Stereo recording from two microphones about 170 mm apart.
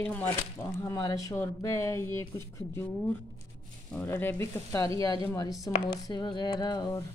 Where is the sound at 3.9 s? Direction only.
15° left (ahead or behind).